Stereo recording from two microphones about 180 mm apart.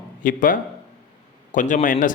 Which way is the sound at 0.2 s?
50° left (ahead or behind).